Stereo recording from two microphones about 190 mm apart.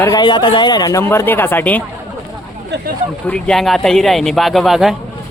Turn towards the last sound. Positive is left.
turn(degrees=0)  # may be behind; listen again after turning